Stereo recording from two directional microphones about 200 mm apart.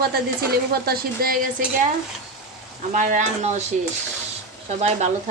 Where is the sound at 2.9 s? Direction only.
40° right (ahead or behind).